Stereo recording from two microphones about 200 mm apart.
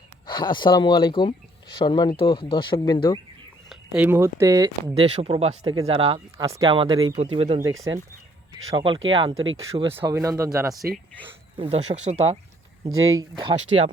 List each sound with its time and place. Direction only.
0.3 s speech: 25° left (ahead or behind)
3.7 s speech: 5° right (ahead or behind)
4.9 s speech: 30° right (ahead or behind)
6.3 s speech: 15° right (ahead or behind)
8.7 s speech: 25° right (ahead or behind)
9.3 s speech: 80° right
9.9 s speech: 10° right (ahead or behind)
11.5 s speech: 30° right (ahead or behind)
12.8 s speech: 20° right (ahead or behind)